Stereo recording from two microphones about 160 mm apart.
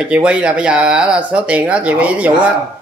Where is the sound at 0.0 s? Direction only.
5° right (ahead or behind).